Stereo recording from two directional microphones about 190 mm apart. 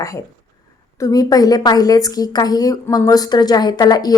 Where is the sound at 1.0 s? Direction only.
20° left (ahead or behind).